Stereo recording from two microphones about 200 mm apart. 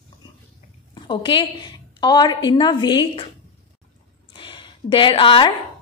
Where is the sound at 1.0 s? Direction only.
25° left (ahead or behind).